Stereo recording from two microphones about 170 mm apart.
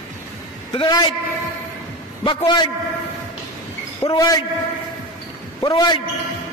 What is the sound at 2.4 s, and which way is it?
Speech, 30° left (ahead or behind).